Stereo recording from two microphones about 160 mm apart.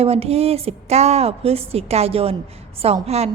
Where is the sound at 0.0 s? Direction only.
40° right (ahead or behind).